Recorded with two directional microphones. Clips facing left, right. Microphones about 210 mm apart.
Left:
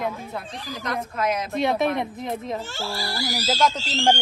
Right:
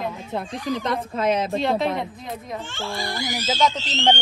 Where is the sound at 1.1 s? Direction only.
30° right (ahead or behind).